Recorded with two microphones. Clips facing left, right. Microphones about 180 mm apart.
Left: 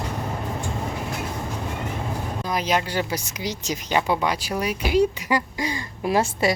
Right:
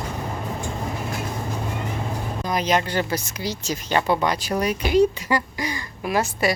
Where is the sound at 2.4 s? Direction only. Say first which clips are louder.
Right 2 dB; 5° left (ahead or behind).